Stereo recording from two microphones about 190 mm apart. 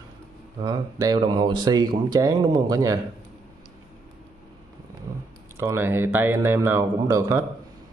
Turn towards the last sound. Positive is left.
turn(degrees=-15)  # may be behind; listen again after turning